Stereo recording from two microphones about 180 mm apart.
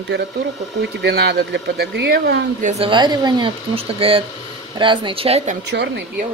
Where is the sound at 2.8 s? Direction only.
25° right (ahead or behind).